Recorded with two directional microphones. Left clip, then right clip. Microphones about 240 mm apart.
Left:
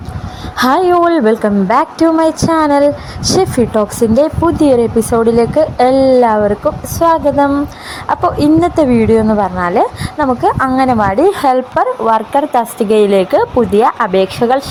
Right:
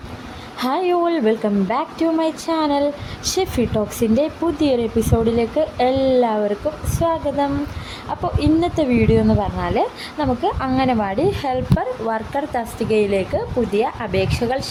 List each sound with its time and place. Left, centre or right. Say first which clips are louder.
0.5 s a woman's voice: left 9 dB; left